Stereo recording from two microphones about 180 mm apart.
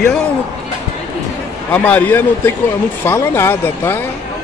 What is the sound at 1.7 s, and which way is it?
Speech, 10° left (ahead or behind).